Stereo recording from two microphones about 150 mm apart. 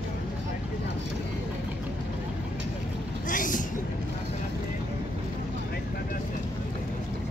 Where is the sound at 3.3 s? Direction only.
65° left (ahead or behind).